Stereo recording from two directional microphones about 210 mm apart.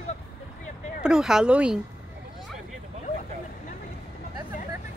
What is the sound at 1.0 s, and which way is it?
Speech, 5° right (ahead or behind).